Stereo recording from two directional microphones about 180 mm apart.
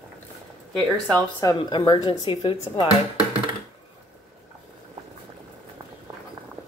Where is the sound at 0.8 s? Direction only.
Centre (ahead or behind).